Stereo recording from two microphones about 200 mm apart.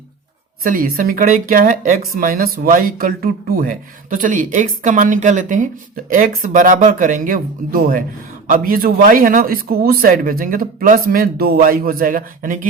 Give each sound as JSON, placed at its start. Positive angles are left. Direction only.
{"t": 0.6, "sound": "speech", "side_deg": -45}